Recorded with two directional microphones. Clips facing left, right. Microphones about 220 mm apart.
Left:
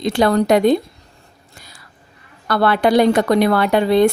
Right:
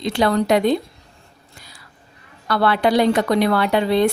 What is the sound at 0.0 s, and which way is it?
Speech, 45° left (ahead or behind).